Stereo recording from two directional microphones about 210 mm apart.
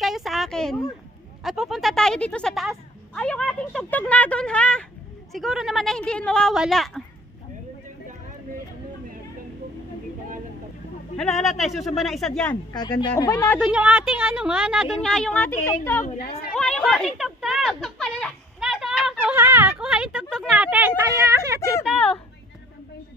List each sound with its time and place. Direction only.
0.0 s a sound: centre (ahead or behind)
1.4 s speech: centre (ahead or behind)
11.1 s speech: centre (ahead or behind)
12.7 s speech: 20° left (ahead or behind)
13.6 s speech: 5° right (ahead or behind)
21.8 s speech: 5° left (ahead or behind)